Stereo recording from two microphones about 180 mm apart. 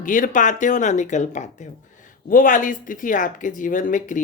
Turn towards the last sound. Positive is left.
turn(degrees=45)  # may be behind; listen again after turning